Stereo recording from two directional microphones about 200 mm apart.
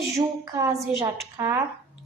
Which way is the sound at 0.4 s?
15° right (ahead or behind).